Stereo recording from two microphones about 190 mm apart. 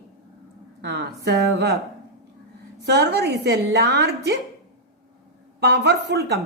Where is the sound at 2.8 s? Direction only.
60° right (ahead or behind).